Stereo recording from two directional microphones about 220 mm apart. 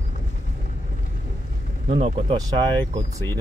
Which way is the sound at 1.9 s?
25° right (ahead or behind).